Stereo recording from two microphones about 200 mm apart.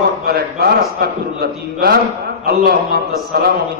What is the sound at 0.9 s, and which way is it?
A man's voice, 50° right (ahead or behind).